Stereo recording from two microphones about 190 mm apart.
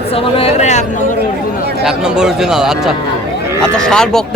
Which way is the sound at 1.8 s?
5° right (ahead or behind).